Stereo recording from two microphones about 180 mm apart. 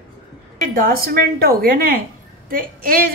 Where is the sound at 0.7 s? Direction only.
55° right (ahead or behind).